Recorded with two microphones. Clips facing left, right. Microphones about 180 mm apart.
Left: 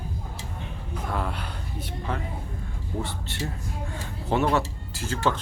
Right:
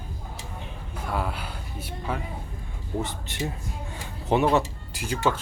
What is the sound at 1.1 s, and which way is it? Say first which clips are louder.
Speech: right 2 dB; 5° right (ahead or behind).